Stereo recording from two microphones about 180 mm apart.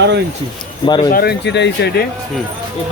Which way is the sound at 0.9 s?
25° left (ahead or behind).